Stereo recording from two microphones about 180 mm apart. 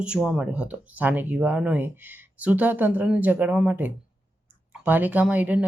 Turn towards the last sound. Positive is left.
turn(degrees=-10)  # may be behind; listen again after turning